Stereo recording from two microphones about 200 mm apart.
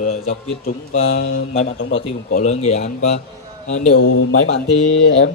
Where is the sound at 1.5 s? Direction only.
35° left (ahead or behind).